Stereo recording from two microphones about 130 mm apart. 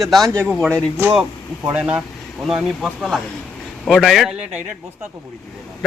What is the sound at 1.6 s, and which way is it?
A man's voice, 10° right (ahead or behind).